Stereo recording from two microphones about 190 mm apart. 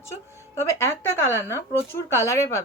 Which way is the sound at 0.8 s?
10° left (ahead or behind).